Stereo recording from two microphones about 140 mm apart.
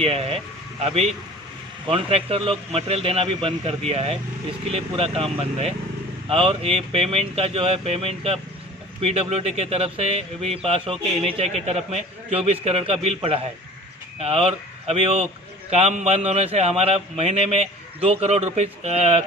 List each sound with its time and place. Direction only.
0.0 s speech: 45° right (ahead or behind)